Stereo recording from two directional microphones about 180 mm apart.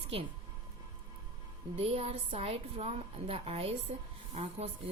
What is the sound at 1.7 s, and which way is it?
Speech, 35° right (ahead or behind).